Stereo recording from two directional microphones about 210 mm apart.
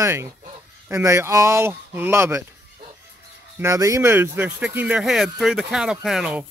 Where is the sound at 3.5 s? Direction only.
15° right (ahead or behind).